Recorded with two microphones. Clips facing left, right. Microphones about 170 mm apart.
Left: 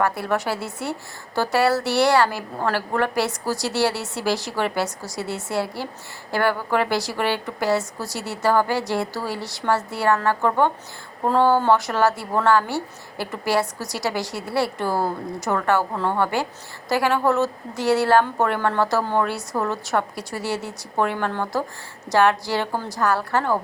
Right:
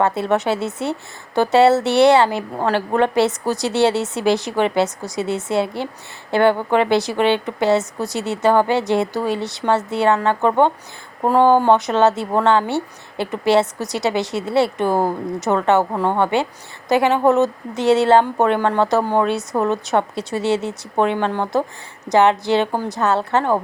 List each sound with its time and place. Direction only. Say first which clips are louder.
0.0 s speech: right 5 dB; 25° right (ahead or behind)